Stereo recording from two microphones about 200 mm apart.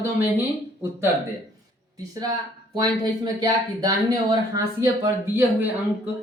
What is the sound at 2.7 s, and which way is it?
Speech, 20° right (ahead or behind).